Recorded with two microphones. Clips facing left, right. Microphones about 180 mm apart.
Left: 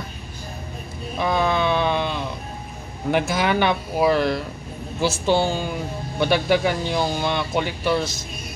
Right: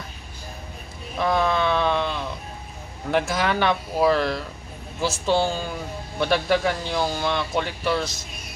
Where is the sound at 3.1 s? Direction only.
5° left (ahead or behind).